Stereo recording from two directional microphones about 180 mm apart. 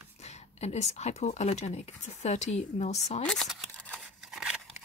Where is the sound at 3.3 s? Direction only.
Centre (ahead or behind).